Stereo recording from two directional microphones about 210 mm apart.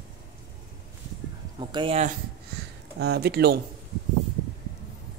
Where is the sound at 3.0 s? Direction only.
50° right (ahead or behind).